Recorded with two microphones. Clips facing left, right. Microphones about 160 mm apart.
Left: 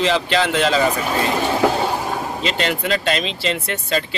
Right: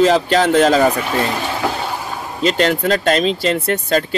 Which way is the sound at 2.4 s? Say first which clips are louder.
Right 9 dB; 45° right (ahead or behind).